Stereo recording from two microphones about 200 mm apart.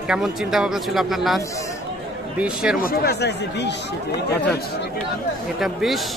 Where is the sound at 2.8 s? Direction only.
50° left (ahead or behind).